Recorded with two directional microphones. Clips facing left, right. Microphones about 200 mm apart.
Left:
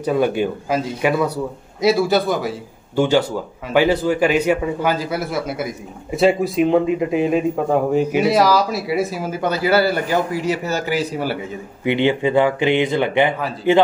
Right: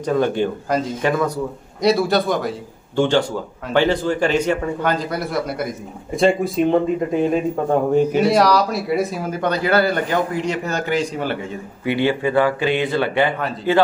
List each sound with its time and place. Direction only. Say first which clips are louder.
0.0 s a man's voice: left 1 dB; 10° left (ahead or behind)
11.8 s speech: left 2 dB; 20° left (ahead or behind)